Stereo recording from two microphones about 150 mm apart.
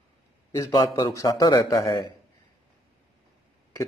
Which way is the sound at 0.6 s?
25° left (ahead or behind).